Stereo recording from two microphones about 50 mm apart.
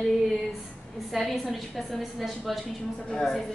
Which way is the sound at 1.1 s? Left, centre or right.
Centre.